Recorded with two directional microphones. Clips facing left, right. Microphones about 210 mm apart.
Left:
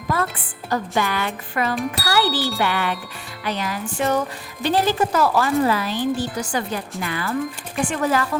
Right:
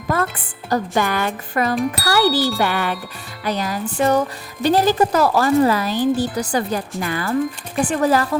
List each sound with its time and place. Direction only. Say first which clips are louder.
0.1 s speech: right 2 dB; 45° right (ahead or behind)